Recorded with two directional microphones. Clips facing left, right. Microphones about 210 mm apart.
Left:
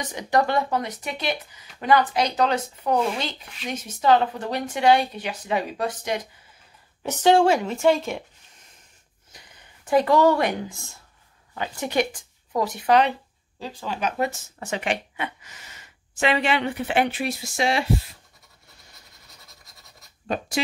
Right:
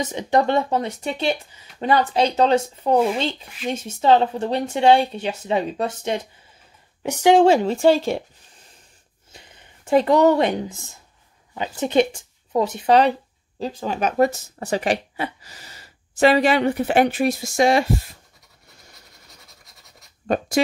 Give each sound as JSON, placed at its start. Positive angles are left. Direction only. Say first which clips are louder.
{"t": 0.0, "sound": "speech", "louder": "right 3 dB", "side_deg": -25}
{"t": 7.0, "sound": "speech", "louder": "right 3 dB", "side_deg": -15}
{"t": 7.4, "sound": "speech", "louder": "right 4 dB", "side_deg": -30}
{"t": 13.6, "sound": "speech", "louder": "right 5 dB", "side_deg": -45}
{"t": 20.2, "sound": "speech", "louder": "right 6 dB", "side_deg": -45}